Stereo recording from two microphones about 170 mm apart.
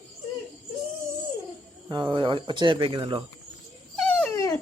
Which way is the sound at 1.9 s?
25° right (ahead or behind).